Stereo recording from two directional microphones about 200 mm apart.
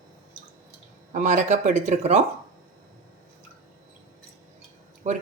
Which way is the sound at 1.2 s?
40° right (ahead or behind).